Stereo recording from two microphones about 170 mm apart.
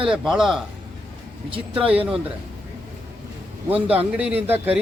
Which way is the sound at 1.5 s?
30° right (ahead or behind).